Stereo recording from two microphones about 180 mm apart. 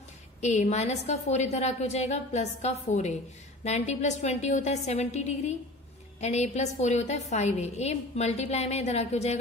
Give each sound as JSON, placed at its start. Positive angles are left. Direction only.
{"t": 0.4, "sound": "a woman's voice", "side_deg": 40}